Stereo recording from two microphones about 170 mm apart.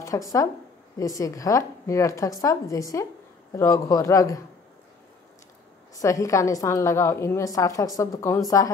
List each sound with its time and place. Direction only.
0.0 s a woman's voice: 20° left (ahead or behind)
5.9 s a woman's voice: 20° left (ahead or behind)